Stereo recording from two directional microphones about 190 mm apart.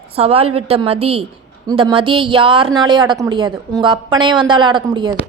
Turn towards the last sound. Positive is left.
turn(degrees=-25)  # may be behind; listen again after turning